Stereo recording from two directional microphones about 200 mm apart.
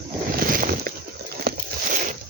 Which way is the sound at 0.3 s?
45° right (ahead or behind).